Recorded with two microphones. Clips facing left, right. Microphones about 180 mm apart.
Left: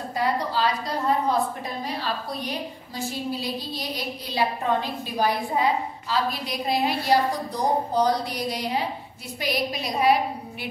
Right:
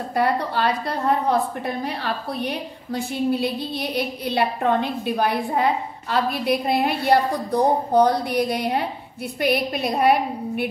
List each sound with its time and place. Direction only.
0.1 s a woman's voice: 60° right (ahead or behind)